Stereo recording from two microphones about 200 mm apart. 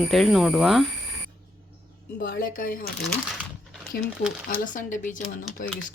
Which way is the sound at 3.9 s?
50° left (ahead or behind).